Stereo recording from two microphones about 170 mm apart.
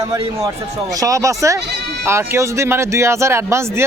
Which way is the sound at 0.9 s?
20° right (ahead or behind).